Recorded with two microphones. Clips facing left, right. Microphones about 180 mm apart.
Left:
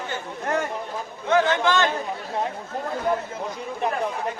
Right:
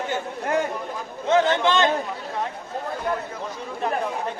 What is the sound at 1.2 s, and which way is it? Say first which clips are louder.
Speech: right 1 dB; 20° right (ahead or behind).